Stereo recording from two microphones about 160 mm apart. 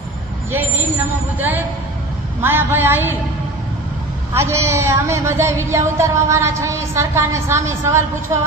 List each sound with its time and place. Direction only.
0.5 s speech: 10° right (ahead or behind)
4.4 s speech: 15° right (ahead or behind)